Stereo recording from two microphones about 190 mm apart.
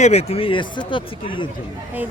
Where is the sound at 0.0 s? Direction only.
35° left (ahead or behind).